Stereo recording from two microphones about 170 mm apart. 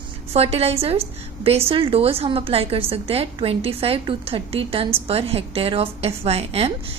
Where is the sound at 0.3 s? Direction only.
35° right (ahead or behind).